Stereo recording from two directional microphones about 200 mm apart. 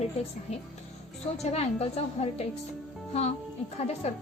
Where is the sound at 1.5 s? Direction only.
30° left (ahead or behind).